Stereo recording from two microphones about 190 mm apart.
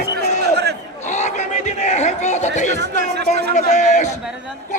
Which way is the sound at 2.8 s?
60° right (ahead or behind).